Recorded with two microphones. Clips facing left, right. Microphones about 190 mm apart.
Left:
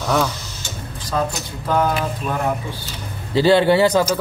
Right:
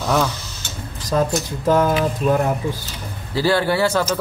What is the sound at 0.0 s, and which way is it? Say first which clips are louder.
Speech: even; centre (ahead or behind).